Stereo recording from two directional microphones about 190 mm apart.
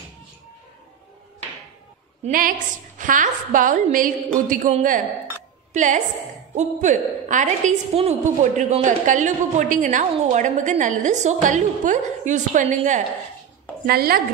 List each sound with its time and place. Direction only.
2.2 s a woman's voice: 45° right (ahead or behind)
13.8 s a woman's voice: 55° right (ahead or behind)